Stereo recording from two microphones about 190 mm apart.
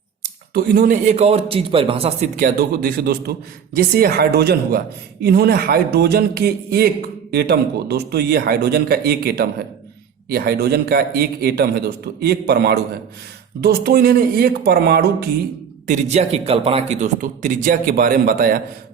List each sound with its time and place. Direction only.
0.5 s a man's voice: 45° right (ahead or behind)
15.9 s a man's voice: 35° right (ahead or behind); by 18.6 s 50° right (ahead or behind)